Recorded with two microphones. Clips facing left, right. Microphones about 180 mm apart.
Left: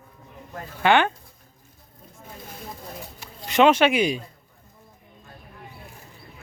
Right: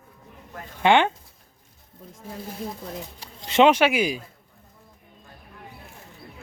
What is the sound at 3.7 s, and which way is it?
Speech, 10° right (ahead or behind).